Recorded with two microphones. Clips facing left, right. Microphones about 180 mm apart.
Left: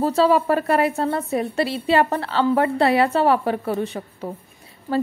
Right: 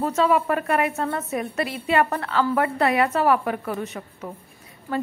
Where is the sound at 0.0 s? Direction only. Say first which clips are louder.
Left 3 dB; 30° left (ahead or behind).